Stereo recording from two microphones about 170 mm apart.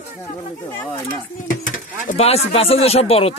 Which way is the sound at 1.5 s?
50° left (ahead or behind).